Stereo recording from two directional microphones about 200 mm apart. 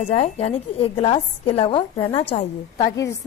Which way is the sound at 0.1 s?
30° left (ahead or behind).